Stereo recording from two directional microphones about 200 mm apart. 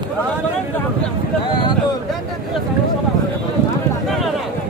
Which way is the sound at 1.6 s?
25° left (ahead or behind).